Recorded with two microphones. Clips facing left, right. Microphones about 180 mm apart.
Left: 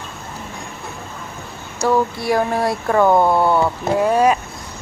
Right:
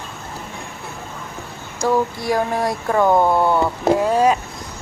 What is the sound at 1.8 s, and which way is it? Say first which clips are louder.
Speech: left 1 dB; 15° right (ahead or behind).